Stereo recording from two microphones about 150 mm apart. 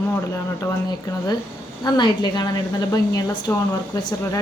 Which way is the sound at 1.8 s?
30° left (ahead or behind).